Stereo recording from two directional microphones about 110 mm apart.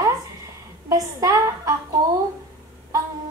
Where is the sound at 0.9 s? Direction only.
35° right (ahead or behind).